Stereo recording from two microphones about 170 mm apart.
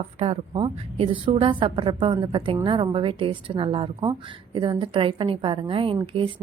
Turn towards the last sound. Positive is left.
turn(degrees=-30)  # may be behind; listen again after turning